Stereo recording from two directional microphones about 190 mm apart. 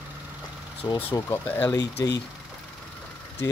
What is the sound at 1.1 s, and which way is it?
Speech, 15° left (ahead or behind).